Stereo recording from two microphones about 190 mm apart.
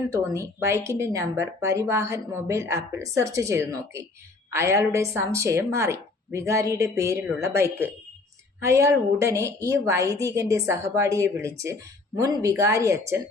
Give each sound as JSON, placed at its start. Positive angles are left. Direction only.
{"t": 0.1, "sound": "a woman's voice", "side_deg": -15}